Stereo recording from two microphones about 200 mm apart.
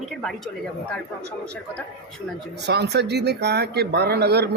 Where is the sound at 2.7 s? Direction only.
55° right (ahead or behind).